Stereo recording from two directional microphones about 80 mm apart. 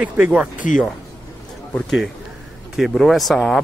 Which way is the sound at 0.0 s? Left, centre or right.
Centre.